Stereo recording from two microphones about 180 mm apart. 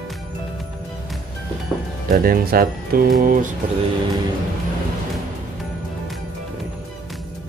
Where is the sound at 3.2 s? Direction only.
50° right (ahead or behind).